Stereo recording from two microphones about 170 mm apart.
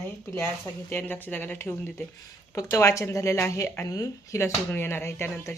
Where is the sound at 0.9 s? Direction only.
10° left (ahead or behind).